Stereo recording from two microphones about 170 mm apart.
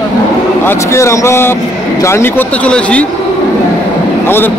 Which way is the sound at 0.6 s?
15° left (ahead or behind).